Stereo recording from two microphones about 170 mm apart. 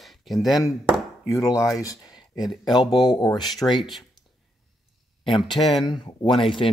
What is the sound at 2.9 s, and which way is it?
Speech, 25° left (ahead or behind).